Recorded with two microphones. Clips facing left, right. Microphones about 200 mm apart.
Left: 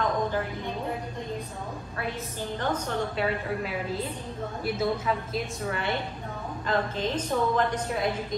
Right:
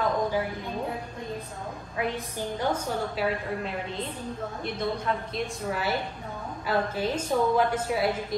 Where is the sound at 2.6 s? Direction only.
10° right (ahead or behind).